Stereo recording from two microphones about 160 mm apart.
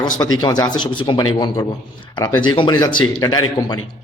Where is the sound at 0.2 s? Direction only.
25° left (ahead or behind).